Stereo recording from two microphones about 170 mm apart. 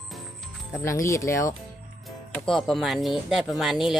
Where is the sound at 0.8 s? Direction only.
15° left (ahead or behind).